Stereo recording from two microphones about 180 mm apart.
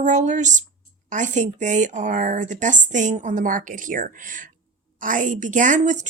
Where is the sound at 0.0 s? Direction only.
40° right (ahead or behind).